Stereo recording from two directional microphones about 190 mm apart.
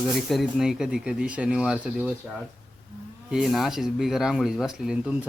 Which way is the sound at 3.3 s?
Centre (ahead or behind).